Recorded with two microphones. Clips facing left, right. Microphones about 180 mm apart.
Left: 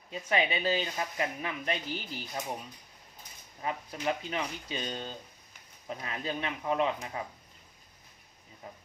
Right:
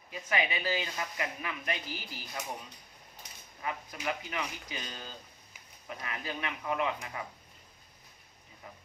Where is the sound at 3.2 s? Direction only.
75° right (ahead or behind).